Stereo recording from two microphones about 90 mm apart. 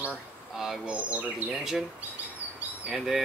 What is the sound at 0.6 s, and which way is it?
Speech, 10° right (ahead or behind).